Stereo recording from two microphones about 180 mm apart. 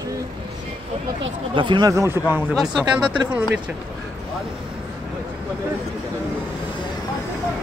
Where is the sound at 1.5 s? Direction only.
25° right (ahead or behind); by 3.5 s 5° right (ahead or behind).